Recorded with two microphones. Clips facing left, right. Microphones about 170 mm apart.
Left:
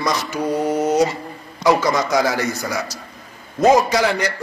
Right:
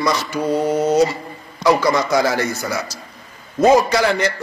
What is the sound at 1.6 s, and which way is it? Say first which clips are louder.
A man's voice: right 1 dB; 15° left (ahead or behind).